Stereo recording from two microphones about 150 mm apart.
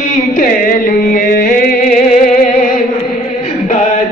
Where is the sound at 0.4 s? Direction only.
75° left (ahead or behind).